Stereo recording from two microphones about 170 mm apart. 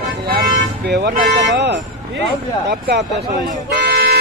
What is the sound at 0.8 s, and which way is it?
Speech, 70° right (ahead or behind).